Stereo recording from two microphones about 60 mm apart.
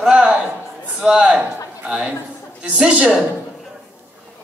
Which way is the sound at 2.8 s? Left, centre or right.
Centre.